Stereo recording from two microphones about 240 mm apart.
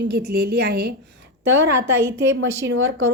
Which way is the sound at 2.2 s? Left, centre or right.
Right.